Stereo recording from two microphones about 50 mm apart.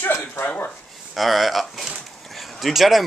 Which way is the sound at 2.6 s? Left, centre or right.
Centre.